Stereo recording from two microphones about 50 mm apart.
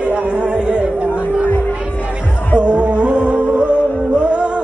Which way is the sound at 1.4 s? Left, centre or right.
Left.